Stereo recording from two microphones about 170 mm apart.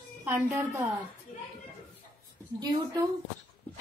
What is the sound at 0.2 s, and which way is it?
Speech, 10° right (ahead or behind).